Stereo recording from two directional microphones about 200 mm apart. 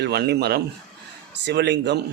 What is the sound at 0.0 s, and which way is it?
A man's voice, 55° right (ahead or behind).